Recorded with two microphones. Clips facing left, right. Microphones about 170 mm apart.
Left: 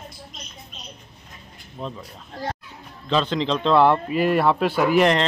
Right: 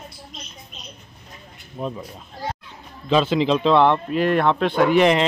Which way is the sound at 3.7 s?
5° left (ahead or behind).